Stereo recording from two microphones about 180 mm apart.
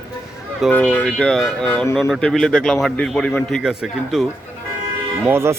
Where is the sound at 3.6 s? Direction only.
5° right (ahead or behind).